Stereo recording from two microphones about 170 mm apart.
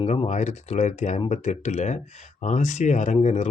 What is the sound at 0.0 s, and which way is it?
Speech, 40° left (ahead or behind).